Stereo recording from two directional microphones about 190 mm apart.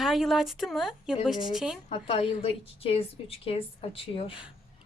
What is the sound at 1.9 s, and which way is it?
A woman's voice, 30° left (ahead or behind).